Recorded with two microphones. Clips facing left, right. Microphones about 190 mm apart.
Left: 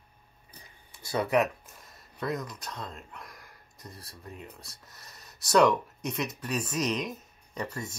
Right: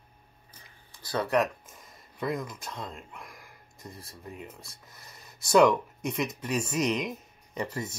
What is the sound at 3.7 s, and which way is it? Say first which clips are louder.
Speech: right 2 dB; 25° right (ahead or behind).